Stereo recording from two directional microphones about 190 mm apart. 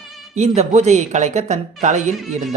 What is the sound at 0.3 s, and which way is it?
Speech, 35° right (ahead or behind).